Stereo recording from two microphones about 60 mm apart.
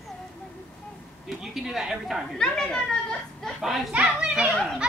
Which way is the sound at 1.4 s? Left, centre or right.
Centre.